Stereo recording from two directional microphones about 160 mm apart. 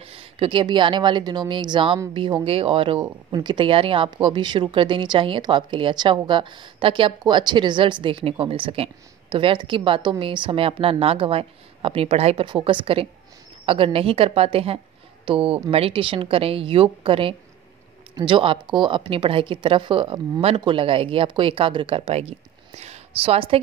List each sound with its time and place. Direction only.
0.0 s a woman's voice: 35° right (ahead or behind)